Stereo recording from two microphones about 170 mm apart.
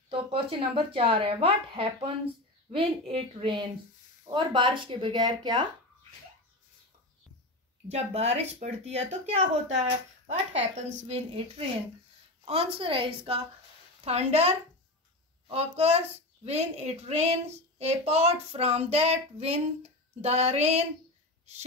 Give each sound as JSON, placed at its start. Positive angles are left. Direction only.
{"t": 0.1, "sound": "speech", "side_deg": -35}
{"t": 7.9, "sound": "speech", "side_deg": -40}